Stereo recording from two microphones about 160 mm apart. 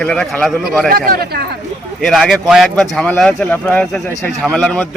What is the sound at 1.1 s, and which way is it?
Speech, 70° right (ahead or behind).